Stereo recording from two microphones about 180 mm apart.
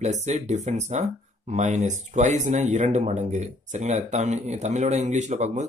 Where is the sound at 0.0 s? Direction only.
40° right (ahead or behind).